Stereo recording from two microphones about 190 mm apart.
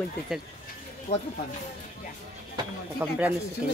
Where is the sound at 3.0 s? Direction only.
15° right (ahead or behind).